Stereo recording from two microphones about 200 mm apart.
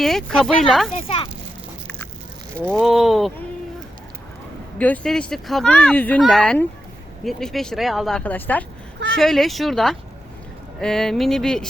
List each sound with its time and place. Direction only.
0.0 s speech: centre (ahead or behind)
0.9 s a sound: 30° left (ahead or behind)
2.6 s speech: centre (ahead or behind)
4.8 s speech: 5° left (ahead or behind)